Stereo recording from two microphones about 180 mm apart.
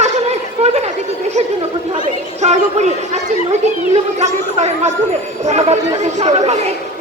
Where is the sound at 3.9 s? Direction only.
40° right (ahead or behind).